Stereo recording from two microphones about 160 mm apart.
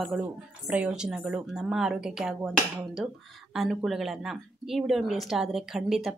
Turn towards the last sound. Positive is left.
turn(degrees=-5)  # may be behind; listen again after turning